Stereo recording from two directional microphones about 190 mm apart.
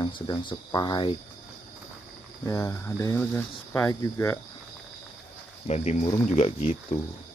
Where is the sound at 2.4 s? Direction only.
15° left (ahead or behind).